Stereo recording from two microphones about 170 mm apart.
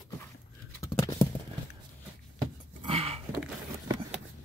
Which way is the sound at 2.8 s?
35° right (ahead or behind).